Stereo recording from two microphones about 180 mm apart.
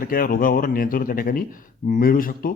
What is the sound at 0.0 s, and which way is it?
Speech, 50° left (ahead or behind).